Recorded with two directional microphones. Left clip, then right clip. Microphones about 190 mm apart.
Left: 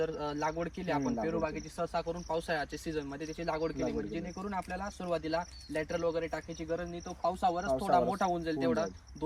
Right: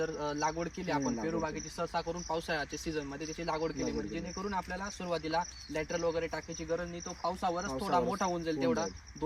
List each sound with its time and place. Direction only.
0.0 s a man's voice: 10° right (ahead or behind)